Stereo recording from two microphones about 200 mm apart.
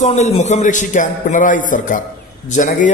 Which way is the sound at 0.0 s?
35° left (ahead or behind).